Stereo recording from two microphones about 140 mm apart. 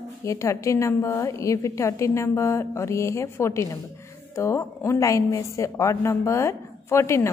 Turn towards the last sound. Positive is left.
turn(degrees=20)  # may be behind; listen again after turning